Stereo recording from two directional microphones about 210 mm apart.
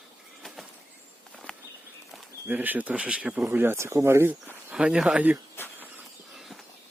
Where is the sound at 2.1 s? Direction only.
10° right (ahead or behind).